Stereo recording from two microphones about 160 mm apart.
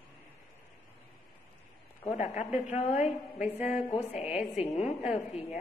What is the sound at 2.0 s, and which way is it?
A woman's voice, 45° left (ahead or behind).